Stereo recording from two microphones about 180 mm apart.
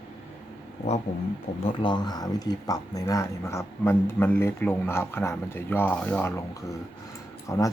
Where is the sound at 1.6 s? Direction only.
25° left (ahead or behind); by 6.3 s 10° left (ahead or behind).